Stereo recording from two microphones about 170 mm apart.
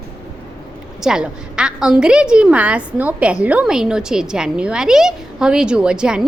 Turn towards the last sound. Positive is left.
turn(degrees=-5)  # may be behind; listen again after turning